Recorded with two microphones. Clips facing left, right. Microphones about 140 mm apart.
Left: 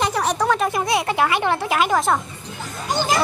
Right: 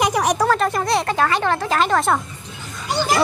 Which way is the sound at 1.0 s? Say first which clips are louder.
Even; 15° left (ahead or behind).